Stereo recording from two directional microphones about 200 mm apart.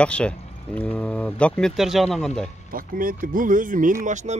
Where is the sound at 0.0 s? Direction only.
5° left (ahead or behind).